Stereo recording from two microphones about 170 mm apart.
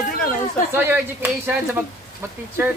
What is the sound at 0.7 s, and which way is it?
Speech, 15° right (ahead or behind).